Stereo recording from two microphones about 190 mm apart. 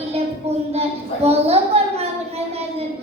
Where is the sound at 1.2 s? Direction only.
35° right (ahead or behind).